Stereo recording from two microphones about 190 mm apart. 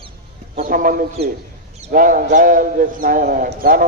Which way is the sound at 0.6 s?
45° right (ahead or behind).